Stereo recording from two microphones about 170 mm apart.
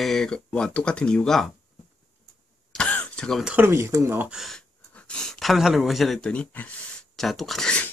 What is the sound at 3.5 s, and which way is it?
Speech, 15° right (ahead or behind).